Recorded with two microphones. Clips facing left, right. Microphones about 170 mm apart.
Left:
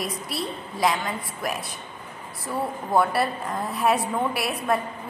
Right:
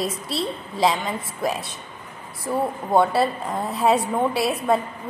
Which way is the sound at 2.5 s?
25° right (ahead or behind).